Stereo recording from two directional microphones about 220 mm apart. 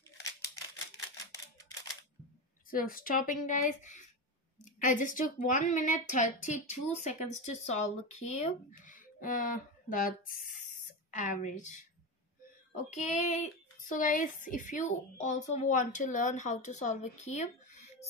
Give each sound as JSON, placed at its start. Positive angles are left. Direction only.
{"t": 2.7, "sound": "a woman's voice", "side_deg": 40}